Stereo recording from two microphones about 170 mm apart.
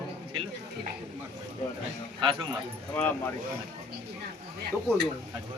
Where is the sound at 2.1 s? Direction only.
30° right (ahead or behind).